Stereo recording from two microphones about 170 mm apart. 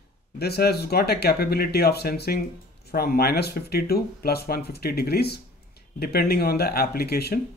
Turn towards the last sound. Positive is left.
turn(degrees=65)  # may be behind; listen again after turning